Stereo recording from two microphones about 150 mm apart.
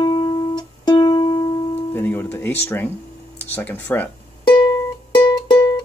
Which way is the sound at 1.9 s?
15° left (ahead or behind).